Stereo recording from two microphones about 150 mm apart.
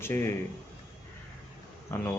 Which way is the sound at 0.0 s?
15° left (ahead or behind).